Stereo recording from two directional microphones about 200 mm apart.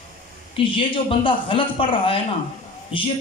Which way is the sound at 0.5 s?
25° left (ahead or behind).